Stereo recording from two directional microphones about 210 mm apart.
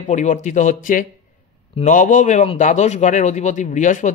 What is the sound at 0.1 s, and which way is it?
Speech, 35° left (ahead or behind).